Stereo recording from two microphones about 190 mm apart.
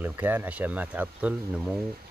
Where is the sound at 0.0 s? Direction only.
10° right (ahead or behind).